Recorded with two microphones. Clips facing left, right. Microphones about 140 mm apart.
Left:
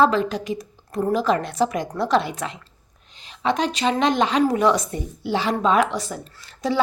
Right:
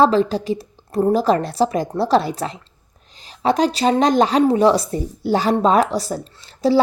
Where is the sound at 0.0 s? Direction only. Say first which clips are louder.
Right 4 dB; 30° right (ahead or behind).